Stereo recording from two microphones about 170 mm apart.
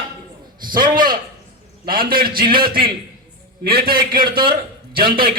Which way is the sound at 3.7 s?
60° right (ahead or behind).